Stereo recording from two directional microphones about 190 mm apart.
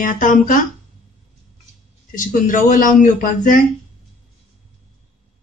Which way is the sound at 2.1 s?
45° left (ahead or behind).